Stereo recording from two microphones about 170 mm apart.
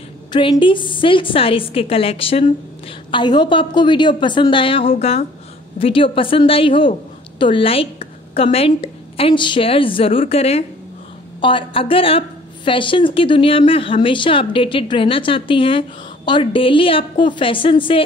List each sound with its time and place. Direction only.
0.3 s a woman's voice: 30° left (ahead or behind)